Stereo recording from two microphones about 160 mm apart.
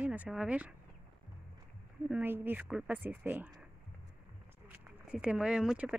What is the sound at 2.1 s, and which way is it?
Speech, 10° right (ahead or behind).